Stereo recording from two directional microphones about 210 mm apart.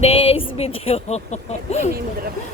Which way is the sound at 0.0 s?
30° left (ahead or behind).